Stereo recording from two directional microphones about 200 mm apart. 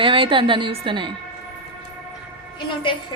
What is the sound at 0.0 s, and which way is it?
A woman's voice, 25° right (ahead or behind).